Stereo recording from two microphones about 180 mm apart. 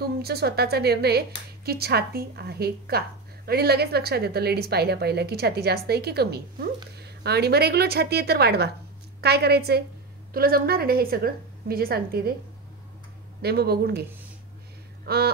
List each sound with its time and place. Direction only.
0.0 s a woman's voice: 60° right (ahead or behind)
13.4 s a woman's voice: 60° right (ahead or behind)
15.1 s a woman's voice: 60° right (ahead or behind)